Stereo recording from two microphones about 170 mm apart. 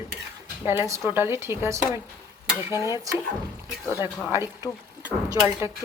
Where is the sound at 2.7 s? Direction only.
20° left (ahead or behind).